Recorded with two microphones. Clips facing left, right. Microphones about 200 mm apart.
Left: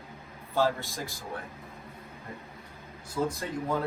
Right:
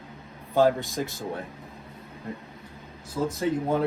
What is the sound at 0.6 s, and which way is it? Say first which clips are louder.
Speech: right 6 dB; 20° right (ahead or behind).